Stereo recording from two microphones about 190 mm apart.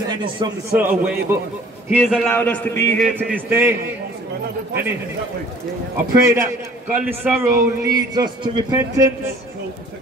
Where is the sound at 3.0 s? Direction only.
5° right (ahead or behind).